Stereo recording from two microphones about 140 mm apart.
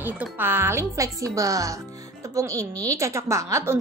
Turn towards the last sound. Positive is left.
turn(degrees=-20)  # may be behind; listen again after turning